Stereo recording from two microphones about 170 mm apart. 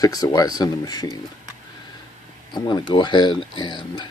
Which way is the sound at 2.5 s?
25° left (ahead or behind).